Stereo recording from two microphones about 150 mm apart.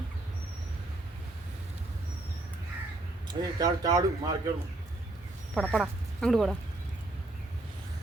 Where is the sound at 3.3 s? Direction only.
25° right (ahead or behind).